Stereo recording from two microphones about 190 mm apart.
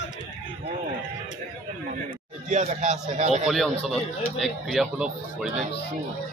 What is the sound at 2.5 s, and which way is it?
Speech, 40° right (ahead or behind).